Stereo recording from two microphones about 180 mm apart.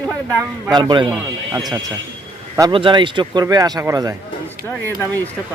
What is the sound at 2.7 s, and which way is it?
Speech, 30° right (ahead or behind).